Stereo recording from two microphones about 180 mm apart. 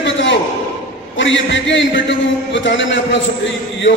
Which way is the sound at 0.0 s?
85° left.